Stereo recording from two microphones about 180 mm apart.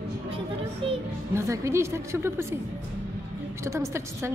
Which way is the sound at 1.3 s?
15° right (ahead or behind).